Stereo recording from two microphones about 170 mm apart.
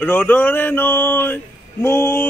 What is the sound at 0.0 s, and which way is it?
Speech, 10° left (ahead or behind).